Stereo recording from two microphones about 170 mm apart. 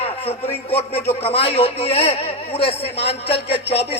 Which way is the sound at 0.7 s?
35° left (ahead or behind).